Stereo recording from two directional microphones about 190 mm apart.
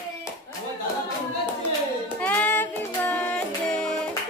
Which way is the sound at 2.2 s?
10° left (ahead or behind).